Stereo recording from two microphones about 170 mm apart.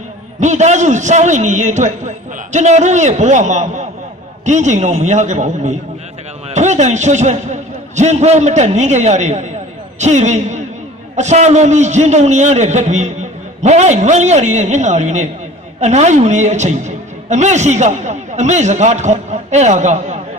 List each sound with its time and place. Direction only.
0.4 s a man's voice: 45° right (ahead or behind)